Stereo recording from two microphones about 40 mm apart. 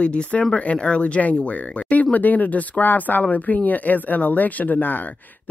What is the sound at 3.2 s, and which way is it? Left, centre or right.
Speech, left.